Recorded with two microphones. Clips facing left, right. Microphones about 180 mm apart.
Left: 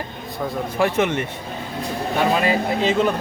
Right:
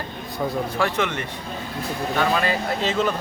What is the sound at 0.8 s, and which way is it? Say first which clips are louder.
Speech: left 6 dB; 25° left (ahead or behind).